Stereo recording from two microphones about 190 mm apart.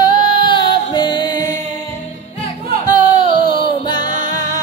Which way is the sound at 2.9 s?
25° left (ahead or behind).